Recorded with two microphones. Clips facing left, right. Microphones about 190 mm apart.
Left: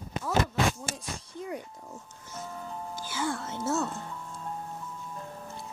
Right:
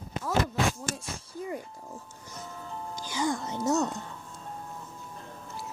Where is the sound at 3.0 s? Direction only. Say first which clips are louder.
Right 3 dB; 15° right (ahead or behind).